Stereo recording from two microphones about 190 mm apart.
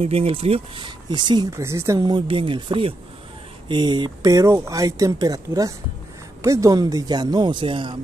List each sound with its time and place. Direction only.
0.0 s speech: 30° right (ahead or behind)